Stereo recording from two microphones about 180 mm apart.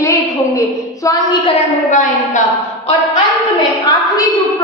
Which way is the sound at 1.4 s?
40° left (ahead or behind).